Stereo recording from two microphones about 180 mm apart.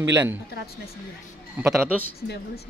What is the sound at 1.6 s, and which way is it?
Speech, 10° right (ahead or behind).